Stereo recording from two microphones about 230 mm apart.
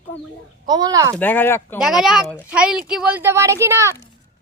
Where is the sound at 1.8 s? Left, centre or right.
Centre.